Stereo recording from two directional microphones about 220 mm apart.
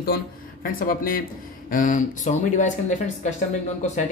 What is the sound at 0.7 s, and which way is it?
Speech, 40° left (ahead or behind).